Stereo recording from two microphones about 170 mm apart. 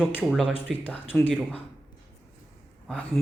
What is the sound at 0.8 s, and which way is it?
Speech, 10° left (ahead or behind).